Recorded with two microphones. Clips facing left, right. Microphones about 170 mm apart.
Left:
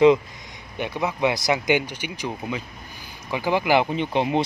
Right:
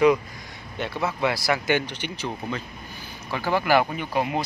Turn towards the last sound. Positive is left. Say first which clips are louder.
# left 4 dB
turn(degrees=25)  # may be behind; listen again after turning